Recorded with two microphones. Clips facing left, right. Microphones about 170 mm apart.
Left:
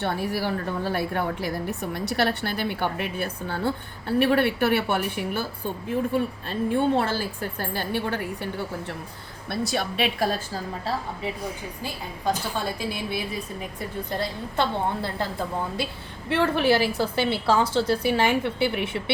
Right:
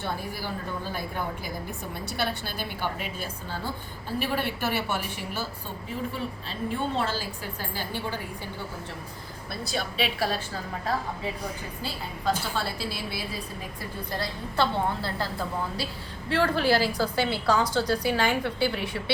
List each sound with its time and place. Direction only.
0.0 s a woman's voice: 70° left (ahead or behind)
9.5 s a woman's voice: 65° left (ahead or behind); by 10.6 s 45° left (ahead or behind)
12.5 s a woman's voice: 15° left (ahead or behind)
16.3 s a woman's voice: 25° left (ahead or behind)